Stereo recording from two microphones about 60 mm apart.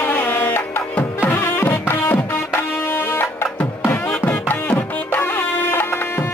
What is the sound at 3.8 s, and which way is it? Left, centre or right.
Music, left.